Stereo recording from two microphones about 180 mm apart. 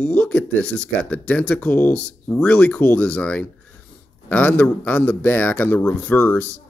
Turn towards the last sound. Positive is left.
turn(degrees=10)  # may be behind; listen again after turning